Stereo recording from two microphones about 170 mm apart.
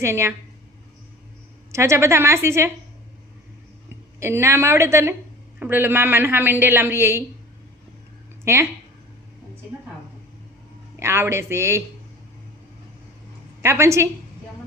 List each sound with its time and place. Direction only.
0.0 s a man's voice: 15° right (ahead or behind)
1.7 s a man's voice: 15° right (ahead or behind)
4.2 s a man's voice: 15° right (ahead or behind)
8.5 s a man's voice: 15° right (ahead or behind)
11.0 s a man's voice: 15° right (ahead or behind)
13.6 s a man's voice: 15° right (ahead or behind)